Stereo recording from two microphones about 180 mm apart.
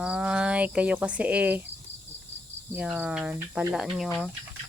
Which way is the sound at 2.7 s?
10° right (ahead or behind).